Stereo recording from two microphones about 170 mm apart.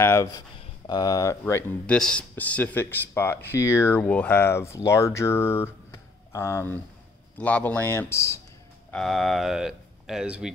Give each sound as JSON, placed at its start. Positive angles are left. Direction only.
{"t": 0.0, "sound": "speech", "side_deg": 15}
{"t": 8.9, "sound": "speech", "side_deg": 0}